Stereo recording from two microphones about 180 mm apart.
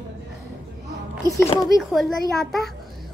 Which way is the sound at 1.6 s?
Centre (ahead or behind).